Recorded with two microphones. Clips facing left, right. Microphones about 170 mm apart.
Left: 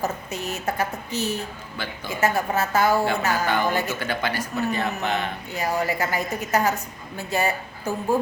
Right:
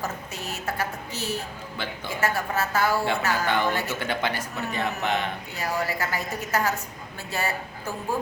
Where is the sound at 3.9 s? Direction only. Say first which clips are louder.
Left 1 dB; 20° right (ahead or behind).